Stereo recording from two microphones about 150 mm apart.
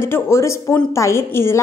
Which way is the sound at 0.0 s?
15° left (ahead or behind).